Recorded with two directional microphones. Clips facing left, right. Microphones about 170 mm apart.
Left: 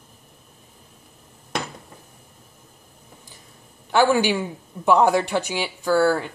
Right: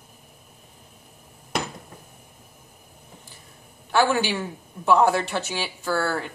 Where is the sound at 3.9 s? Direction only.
15° left (ahead or behind).